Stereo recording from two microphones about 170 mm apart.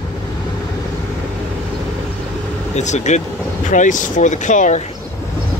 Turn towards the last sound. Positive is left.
turn(degrees=45)  # may be behind; listen again after turning